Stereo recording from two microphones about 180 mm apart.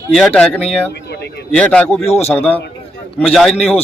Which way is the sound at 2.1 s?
35° left (ahead or behind).